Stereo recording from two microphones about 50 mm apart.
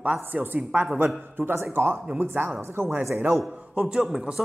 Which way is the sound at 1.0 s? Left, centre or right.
Right.